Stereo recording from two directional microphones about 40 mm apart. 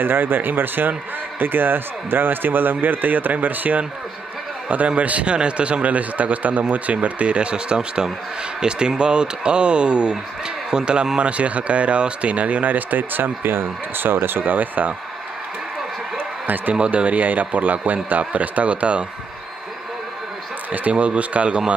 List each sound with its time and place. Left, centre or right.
0.0 s a man's voice: right
16.4 s a man's voice: right
16.8 s a man's voice: right
20.9 s speech: right